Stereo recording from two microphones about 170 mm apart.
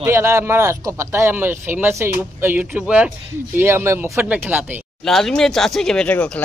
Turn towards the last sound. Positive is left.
turn(degrees=5)  # may be behind; listen again after turning